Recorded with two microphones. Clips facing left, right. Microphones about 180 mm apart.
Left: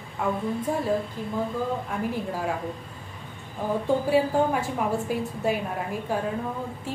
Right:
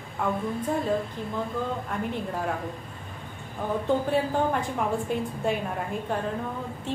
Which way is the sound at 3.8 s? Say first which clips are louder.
Left 3 dB; 10° left (ahead or behind).